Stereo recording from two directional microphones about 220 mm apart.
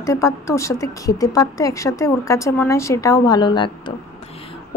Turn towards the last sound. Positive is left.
turn(degrees=20)  # may be behind; listen again after turning